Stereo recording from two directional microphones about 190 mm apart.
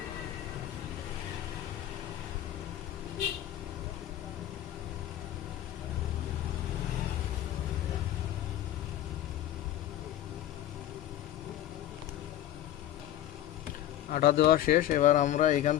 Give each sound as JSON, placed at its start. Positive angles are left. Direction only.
{"t": 14.1, "sound": "speech", "side_deg": 55}